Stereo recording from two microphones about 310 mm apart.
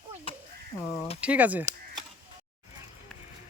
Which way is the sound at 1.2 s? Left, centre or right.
Centre.